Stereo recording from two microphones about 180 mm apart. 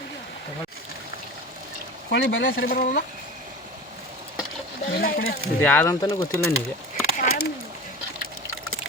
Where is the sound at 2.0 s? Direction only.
90° left.